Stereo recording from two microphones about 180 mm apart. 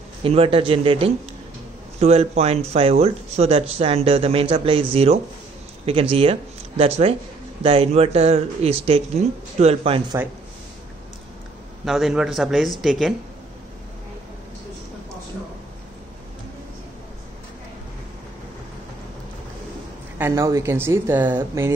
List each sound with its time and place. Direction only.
0.2 s speech: 30° right (ahead or behind)
11.8 s a man's voice: centre (ahead or behind)
20.2 s speech: 15° right (ahead or behind)